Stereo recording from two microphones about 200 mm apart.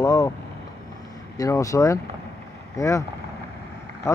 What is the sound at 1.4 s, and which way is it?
Speech, 15° left (ahead or behind).